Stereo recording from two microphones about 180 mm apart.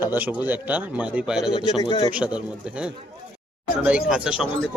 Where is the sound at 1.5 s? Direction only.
30° left (ahead or behind).